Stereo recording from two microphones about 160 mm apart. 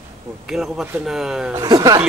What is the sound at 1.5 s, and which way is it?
Speech, 20° right (ahead or behind).